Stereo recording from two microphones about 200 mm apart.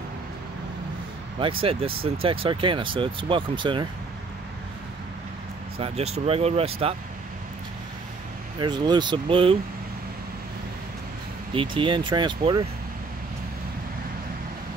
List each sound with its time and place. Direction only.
1.4 s speech: 25° right (ahead or behind)
5.8 s speech: 30° right (ahead or behind)
8.5 s speech: 20° right (ahead or behind)
11.5 s speech: 25° right (ahead or behind)